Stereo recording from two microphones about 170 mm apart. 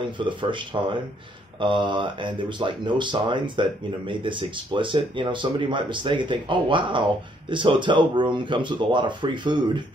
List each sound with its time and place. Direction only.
0.0 s speech: 30° right (ahead or behind)